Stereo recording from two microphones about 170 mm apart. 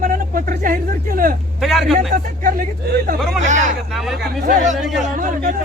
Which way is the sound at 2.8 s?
65° right (ahead or behind).